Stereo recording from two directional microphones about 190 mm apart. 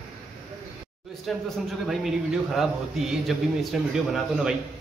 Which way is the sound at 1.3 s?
Centre (ahead or behind).